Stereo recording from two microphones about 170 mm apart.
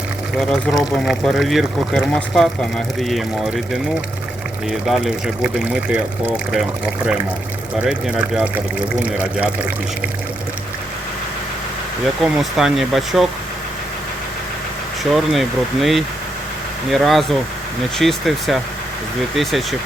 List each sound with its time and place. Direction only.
0.3 s speech: centre (ahead or behind)
12.2 s speech: centre (ahead or behind)
15.1 s speech: centre (ahead or behind)